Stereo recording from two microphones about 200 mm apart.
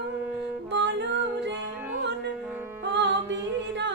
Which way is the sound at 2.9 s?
60° right (ahead or behind).